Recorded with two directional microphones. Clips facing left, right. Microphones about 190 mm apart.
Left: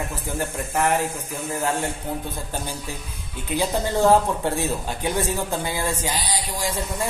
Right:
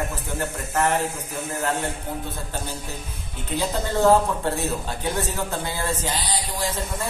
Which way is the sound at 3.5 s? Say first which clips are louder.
Left 2 dB; 15° left (ahead or behind).